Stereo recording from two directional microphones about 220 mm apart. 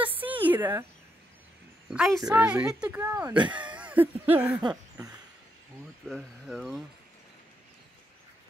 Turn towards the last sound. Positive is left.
turn(degrees=0)  # may be behind; listen again after turning